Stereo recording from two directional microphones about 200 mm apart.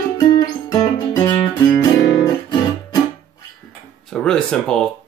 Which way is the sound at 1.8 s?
20° left (ahead or behind).